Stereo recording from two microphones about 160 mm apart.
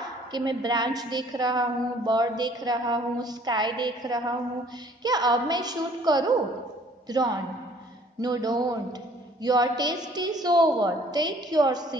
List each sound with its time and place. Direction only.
0.3 s a woman's voice: 25° right (ahead or behind)